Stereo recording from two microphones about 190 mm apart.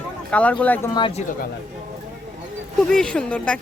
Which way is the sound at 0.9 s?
25° left (ahead or behind).